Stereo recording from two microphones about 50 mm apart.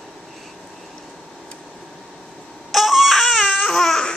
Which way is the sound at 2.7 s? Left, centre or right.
Centre.